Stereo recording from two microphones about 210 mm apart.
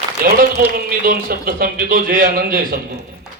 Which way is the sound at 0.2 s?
45° right (ahead or behind).